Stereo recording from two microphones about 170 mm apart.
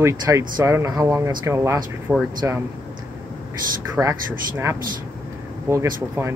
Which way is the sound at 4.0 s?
15° right (ahead or behind).